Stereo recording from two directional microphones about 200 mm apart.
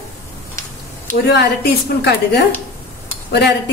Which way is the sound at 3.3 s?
55° left (ahead or behind).